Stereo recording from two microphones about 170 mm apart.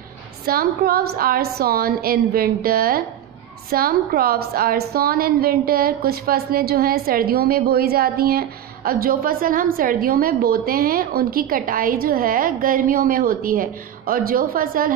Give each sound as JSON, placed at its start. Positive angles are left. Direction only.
{"t": 0.5, "sound": "a woman's voice", "side_deg": -60}